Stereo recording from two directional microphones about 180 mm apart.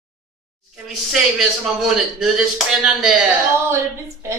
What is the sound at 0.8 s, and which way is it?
A man's voice, centre (ahead or behind).